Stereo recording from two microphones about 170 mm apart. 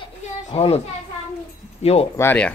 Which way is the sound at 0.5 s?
35° left (ahead or behind).